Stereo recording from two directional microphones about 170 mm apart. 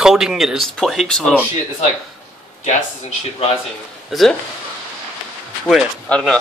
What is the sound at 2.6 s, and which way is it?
Speech, 45° left (ahead or behind).